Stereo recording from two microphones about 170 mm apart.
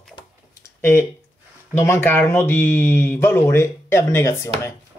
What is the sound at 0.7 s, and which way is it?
Speech, 15° left (ahead or behind).